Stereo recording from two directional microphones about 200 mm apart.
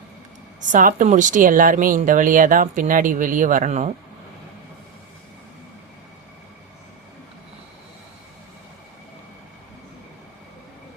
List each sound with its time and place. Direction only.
0.6 s speech: 40° right (ahead or behind)